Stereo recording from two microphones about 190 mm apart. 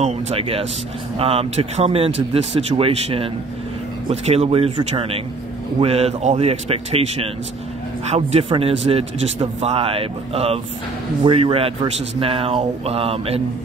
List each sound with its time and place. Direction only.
0.0 s a man's voice: 30° right (ahead or behind)